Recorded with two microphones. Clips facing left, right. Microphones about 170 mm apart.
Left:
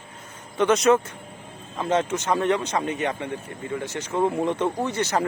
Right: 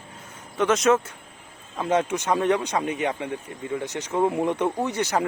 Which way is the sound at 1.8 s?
10° right (ahead or behind).